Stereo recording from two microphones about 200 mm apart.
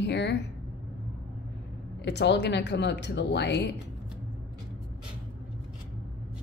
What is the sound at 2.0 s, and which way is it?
Speech, 60° left (ahead or behind).